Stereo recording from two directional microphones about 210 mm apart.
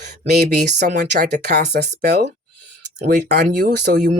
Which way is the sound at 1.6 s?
50° right (ahead or behind).